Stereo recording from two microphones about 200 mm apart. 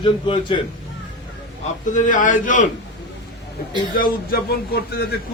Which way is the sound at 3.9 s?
50° left (ahead or behind).